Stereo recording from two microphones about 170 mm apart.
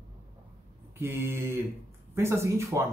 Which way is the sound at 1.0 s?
15° right (ahead or behind).